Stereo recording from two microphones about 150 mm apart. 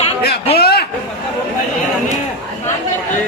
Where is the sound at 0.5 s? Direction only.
90° left.